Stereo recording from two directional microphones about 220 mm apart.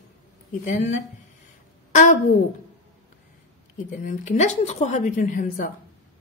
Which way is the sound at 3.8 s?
35° left (ahead or behind).